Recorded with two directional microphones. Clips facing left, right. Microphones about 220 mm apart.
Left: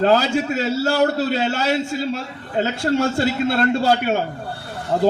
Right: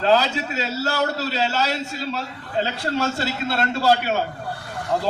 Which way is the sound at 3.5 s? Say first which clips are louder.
Right 2 dB; 50° left (ahead or behind).